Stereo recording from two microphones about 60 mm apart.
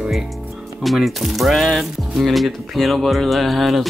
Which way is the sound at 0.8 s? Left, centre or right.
Centre.